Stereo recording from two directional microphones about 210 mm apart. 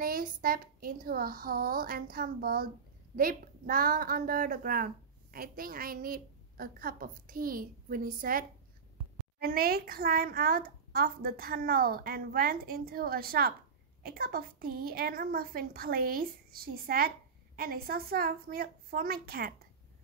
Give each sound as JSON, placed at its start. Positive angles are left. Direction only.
{"t": 0.0, "sound": "a woman's voice", "side_deg": -45}